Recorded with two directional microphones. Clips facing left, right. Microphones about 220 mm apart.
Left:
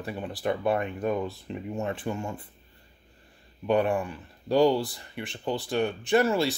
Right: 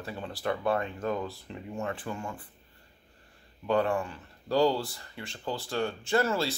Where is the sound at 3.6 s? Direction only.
20° left (ahead or behind).